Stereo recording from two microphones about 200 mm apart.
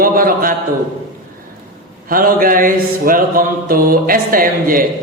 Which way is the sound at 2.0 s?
45° right (ahead or behind).